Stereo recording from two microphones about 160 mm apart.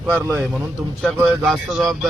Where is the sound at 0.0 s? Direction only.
10° right (ahead or behind).